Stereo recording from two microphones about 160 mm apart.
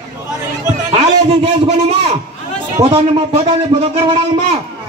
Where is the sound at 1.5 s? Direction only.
40° right (ahead or behind).